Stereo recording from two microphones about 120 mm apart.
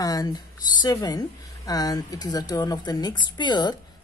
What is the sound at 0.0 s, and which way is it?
Speech, 30° left (ahead or behind).